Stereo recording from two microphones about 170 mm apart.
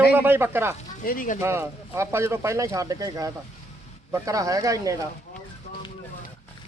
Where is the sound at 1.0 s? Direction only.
55° left (ahead or behind).